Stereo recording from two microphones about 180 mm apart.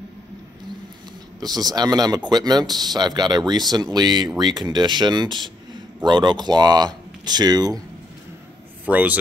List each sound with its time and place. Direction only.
1.4 s speech: 20° right (ahead or behind)
8.8 s a man's voice: 10° right (ahead or behind)